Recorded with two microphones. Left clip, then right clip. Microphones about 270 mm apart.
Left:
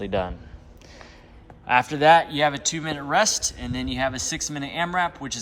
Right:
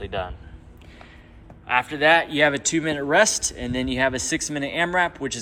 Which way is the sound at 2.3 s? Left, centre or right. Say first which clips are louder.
Right 3 dB; centre.